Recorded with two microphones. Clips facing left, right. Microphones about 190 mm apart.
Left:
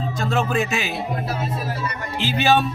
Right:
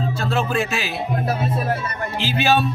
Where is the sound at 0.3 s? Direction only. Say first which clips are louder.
Left 1 dB; centre (ahead or behind).